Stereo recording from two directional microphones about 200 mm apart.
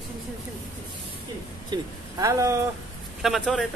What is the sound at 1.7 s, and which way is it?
Speech, 15° right (ahead or behind).